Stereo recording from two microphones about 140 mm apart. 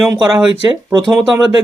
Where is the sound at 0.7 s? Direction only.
35° right (ahead or behind).